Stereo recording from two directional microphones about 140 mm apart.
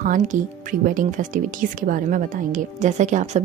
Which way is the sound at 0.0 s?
70° right (ahead or behind).